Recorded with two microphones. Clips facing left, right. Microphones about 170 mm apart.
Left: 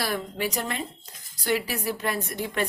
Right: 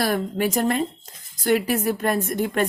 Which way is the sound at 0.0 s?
50° right (ahead or behind).